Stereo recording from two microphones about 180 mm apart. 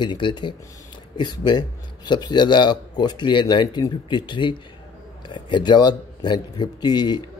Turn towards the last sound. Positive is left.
turn(degrees=25)  # may be behind; listen again after turning